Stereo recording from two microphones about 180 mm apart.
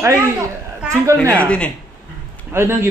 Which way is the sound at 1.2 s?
10° right (ahead or behind).